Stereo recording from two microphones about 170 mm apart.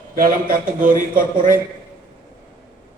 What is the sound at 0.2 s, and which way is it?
A man's voice, 55° right (ahead or behind).